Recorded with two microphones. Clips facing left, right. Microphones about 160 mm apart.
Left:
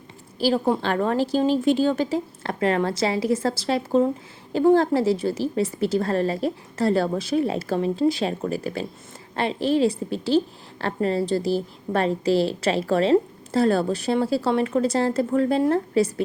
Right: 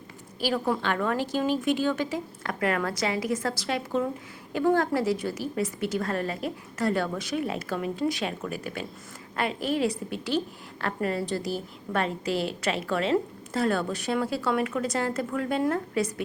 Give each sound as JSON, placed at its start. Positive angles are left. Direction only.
{"t": 0.3, "sound": "a woman's voice", "side_deg": 30}